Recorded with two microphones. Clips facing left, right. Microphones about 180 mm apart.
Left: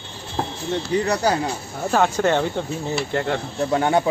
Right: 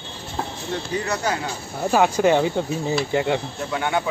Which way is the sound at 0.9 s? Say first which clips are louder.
Left 5 dB; 35° left (ahead or behind).